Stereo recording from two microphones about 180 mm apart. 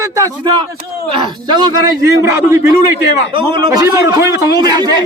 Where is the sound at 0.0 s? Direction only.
20° right (ahead or behind).